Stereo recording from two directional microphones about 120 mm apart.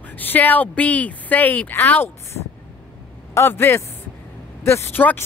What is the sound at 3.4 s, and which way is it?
Speech, 20° left (ahead or behind).